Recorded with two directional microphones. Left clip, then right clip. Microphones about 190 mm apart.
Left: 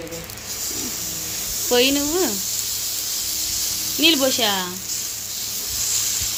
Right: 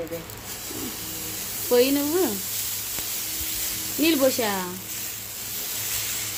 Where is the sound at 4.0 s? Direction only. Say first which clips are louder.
Left 4 dB; 5° right (ahead or behind).